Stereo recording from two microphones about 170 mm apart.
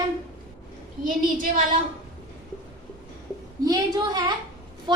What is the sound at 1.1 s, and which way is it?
Speech, 55° right (ahead or behind).